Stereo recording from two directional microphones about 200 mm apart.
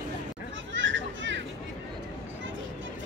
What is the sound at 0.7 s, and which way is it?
Children playing, 70° right (ahead or behind).